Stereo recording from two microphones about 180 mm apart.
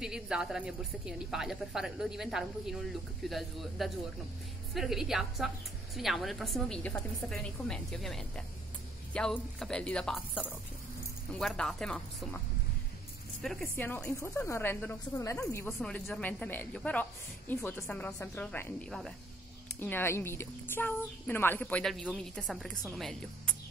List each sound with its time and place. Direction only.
0.0 s a woman's voice: 5° right (ahead or behind)
13.4 s a woman's voice: centre (ahead or behind)
19.8 s a woman's voice: 15° left (ahead or behind)